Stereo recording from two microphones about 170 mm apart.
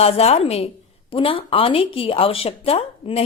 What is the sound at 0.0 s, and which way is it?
A woman's voice, 35° left (ahead or behind).